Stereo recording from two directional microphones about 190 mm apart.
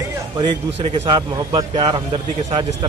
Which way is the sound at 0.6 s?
30° right (ahead or behind).